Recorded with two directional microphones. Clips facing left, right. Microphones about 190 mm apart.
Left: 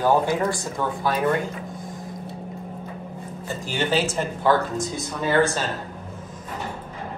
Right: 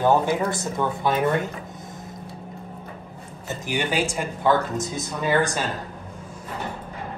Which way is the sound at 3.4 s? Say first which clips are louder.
Even; 20° right (ahead or behind).